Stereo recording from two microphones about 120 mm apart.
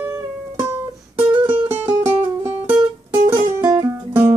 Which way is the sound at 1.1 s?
15° right (ahead or behind).